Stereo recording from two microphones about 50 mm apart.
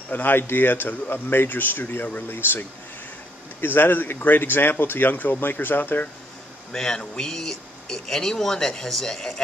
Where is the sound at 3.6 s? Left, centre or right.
Left.